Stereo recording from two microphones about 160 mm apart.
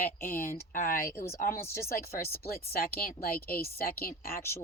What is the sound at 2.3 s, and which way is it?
A woman's voice, 70° left (ahead or behind).